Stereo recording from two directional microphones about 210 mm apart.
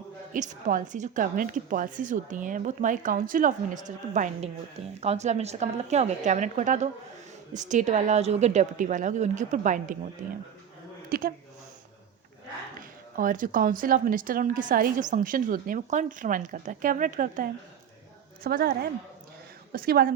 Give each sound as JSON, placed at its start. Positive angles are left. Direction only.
{"t": 0.3, "sound": "a woman's voice", "side_deg": -40}
{"t": 11.1, "sound": "a woman's voice", "side_deg": -45}
{"t": 13.1, "sound": "a woman's voice", "side_deg": -40}